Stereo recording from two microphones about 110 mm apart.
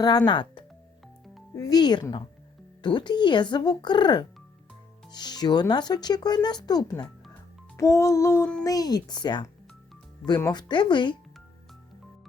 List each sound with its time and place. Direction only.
0.0 s speech: 40° left (ahead or behind)
7.8 s music: 25° left (ahead or behind)
8.6 s speech: 35° left (ahead or behind)
10.5 s speech: 45° left (ahead or behind)